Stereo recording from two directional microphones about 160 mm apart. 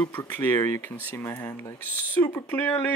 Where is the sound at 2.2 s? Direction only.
10° left (ahead or behind).